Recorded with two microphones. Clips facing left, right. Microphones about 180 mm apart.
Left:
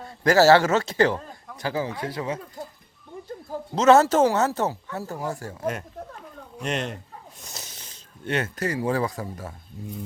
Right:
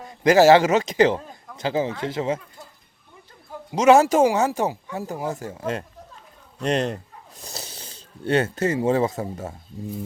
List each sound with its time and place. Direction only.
0.0 s speech: 15° right (ahead or behind)
1.2 s a sound: centre (ahead or behind)
1.5 s speech: 25° right (ahead or behind)
3.7 s speech: 10° right (ahead or behind)
6.6 s speech: 35° right (ahead or behind)